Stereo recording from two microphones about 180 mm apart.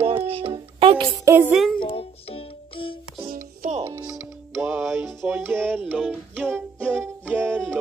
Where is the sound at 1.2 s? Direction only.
15° right (ahead or behind).